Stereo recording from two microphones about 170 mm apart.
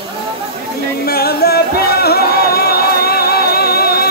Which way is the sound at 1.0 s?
65° left (ahead or behind).